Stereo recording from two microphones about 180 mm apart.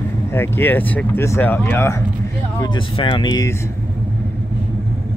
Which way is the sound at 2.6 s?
25° left (ahead or behind).